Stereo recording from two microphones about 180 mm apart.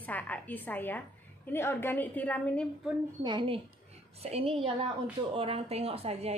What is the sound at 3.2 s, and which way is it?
A woman's voice, 25° right (ahead or behind).